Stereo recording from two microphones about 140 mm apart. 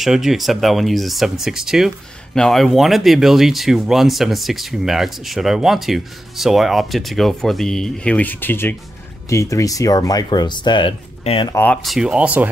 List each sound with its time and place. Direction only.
0.0 s speech: 5° right (ahead or behind); by 11.4 s 40° left (ahead or behind)
11.5 s speech: 10° left (ahead or behind)
11.8 s speech: 5° right (ahead or behind)